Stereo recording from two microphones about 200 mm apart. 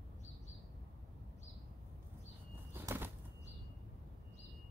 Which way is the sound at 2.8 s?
10° right (ahead or behind).